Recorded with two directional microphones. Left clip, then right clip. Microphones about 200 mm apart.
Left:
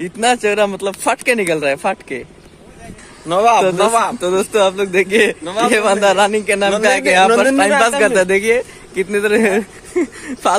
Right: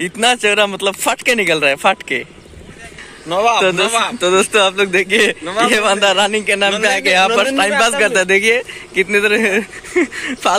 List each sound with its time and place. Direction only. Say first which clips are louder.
0.0 s speech: right 1 dB; 5° left (ahead or behind)
3.3 s a man's voice: left 2 dB; 45° left (ahead or behind)
3.8 s speech: left 2 dB; 25° left (ahead or behind)
4.1 s speech: right 3 dB; 5° left (ahead or behind)
5.4 s a man's voice: right 1 dB; 15° left (ahead or behind)
5.7 s speech: left 1 dB; centre (ahead or behind)